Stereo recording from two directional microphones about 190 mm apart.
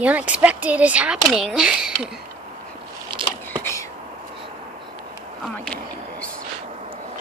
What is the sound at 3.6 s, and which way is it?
Whispering, 15° left (ahead or behind).